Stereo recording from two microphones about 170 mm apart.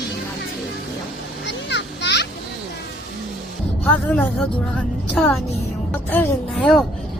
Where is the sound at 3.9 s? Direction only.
5° left (ahead or behind).